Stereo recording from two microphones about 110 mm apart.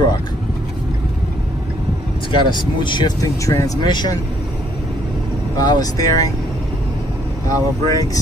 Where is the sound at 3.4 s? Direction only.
30° left (ahead or behind).